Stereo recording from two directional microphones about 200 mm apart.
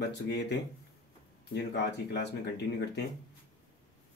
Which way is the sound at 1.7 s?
60° left (ahead or behind).